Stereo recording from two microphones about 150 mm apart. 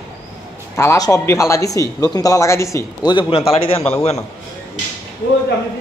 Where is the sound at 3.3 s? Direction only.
40° left (ahead or behind).